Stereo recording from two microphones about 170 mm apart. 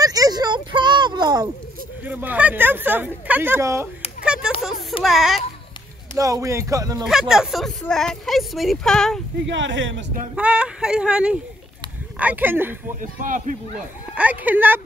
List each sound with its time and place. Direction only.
0.0 s a sound: 20° right (ahead or behind)
2.0 s speech: 10° right (ahead or behind)
4.2 s a sound: 5° right (ahead or behind)
5.0 s a woman's voice: centre (ahead or behind)
6.1 s speech: 20° right (ahead or behind)
7.1 s a woman's voice: 5° right (ahead or behind)
9.5 s speech: 90° right
10.3 s a woman's voice: 5° right (ahead or behind)
13.0 s a man's voice: 50° right (ahead or behind)
14.1 s speech: 10° right (ahead or behind)